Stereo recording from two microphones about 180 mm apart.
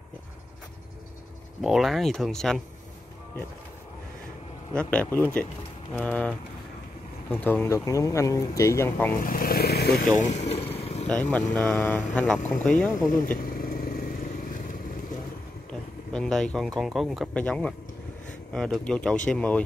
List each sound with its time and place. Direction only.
1.6 s speech: centre (ahead or behind)
4.7 s speech: 10° left (ahead or behind)
9.2 s speech: 50° left (ahead or behind)
10.8 s vehicle: 35° left (ahead or behind)
11.1 s speech: 10° left (ahead or behind)
13.4 s vehicle: 55° left (ahead or behind)
16.1 s speech: 5° left (ahead or behind)